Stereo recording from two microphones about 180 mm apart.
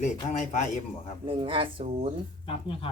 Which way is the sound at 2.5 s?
30° left (ahead or behind).